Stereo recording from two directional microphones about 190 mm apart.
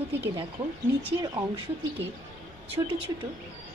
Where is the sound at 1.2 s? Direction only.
20° right (ahead or behind).